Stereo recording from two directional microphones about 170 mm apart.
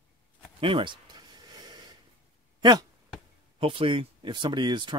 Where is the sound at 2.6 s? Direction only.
25° right (ahead or behind).